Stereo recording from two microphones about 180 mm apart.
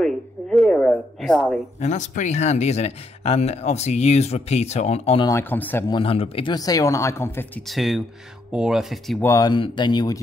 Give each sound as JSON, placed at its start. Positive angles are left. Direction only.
{"t": 0.0, "sound": "a sound", "side_deg": 0}
{"t": 1.8, "sound": "speech", "side_deg": 40}
{"t": 5.2, "sound": "speech", "side_deg": 15}
{"t": 5.9, "sound": "speech", "side_deg": 30}
{"t": 7.6, "sound": "speech", "side_deg": 0}
{"t": 9.2, "sound": "speech", "side_deg": 20}